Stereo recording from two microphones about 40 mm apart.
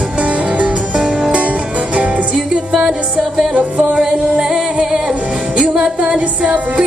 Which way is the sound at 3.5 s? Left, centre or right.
Right.